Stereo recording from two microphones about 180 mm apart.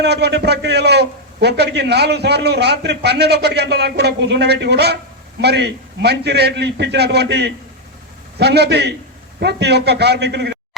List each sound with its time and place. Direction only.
0.0 s a man's voice: 65° right (ahead or behind)